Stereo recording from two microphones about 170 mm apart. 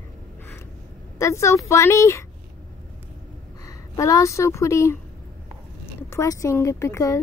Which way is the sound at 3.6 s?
20° left (ahead or behind).